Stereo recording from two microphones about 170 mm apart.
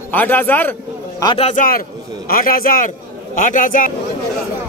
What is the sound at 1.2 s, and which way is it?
Speech, 30° left (ahead or behind).